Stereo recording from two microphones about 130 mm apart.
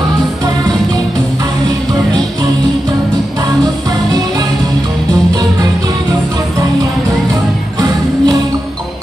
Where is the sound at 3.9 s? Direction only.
30° right (ahead or behind).